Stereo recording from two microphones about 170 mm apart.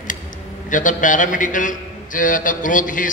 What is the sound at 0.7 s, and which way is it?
A man's voice, 50° left (ahead or behind).